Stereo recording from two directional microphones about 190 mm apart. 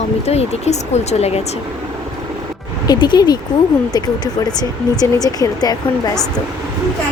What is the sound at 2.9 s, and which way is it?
Speech, 25° left (ahead or behind).